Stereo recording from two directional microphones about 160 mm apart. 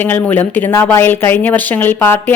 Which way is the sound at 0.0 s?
10° left (ahead or behind).